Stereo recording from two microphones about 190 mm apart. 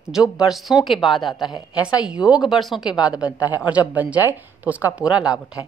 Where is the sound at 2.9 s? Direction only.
20° left (ahead or behind).